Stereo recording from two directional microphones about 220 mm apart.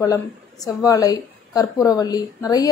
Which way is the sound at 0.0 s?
15° left (ahead or behind).